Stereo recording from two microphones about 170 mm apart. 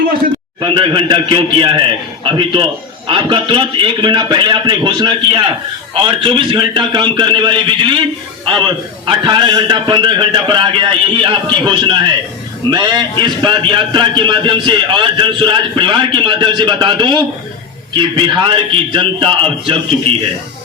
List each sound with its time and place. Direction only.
0.6 s a man's voice: 30° right (ahead or behind)
9.0 s a man's voice: 25° right (ahead or behind)